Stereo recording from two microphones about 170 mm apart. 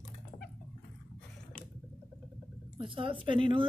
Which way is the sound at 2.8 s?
30° right (ahead or behind).